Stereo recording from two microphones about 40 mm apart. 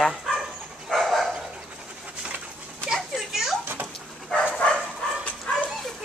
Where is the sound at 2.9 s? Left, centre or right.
Centre.